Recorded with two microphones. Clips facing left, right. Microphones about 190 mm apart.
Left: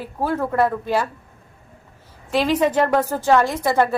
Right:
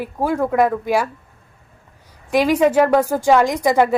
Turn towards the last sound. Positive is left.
turn(degrees=-15)  # may be behind; listen again after turning